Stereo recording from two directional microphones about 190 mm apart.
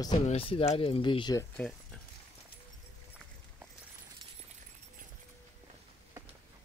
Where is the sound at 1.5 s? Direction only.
5° left (ahead or behind).